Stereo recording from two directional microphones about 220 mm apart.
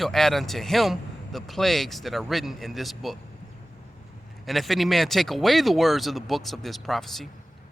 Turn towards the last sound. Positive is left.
turn(degrees=0)  # may be behind; listen again after turning